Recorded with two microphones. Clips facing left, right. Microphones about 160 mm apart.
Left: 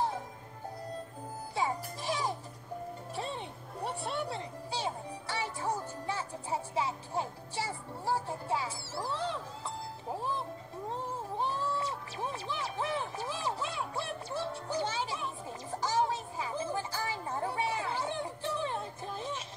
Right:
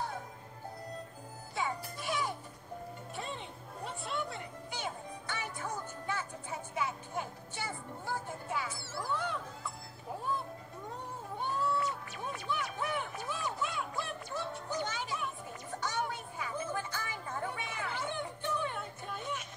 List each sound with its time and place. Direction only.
1.5 s music: 35° left (ahead or behind)
4.0 s music: 30° left (ahead or behind)
10.9 s music: 30° left (ahead or behind)